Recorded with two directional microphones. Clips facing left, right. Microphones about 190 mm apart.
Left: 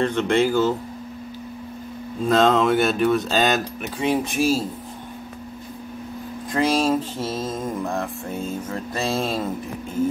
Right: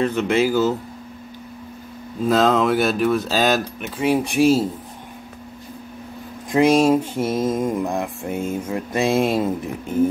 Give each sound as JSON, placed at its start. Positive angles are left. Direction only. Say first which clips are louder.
{"t": 0.0, "sound": "speech", "louder": "right 1 dB", "side_deg": -5}
{"t": 2.2, "sound": "speech", "louder": "right 1 dB", "side_deg": -5}
{"t": 6.5, "sound": "mantra", "louder": "right 5 dB", "side_deg": -15}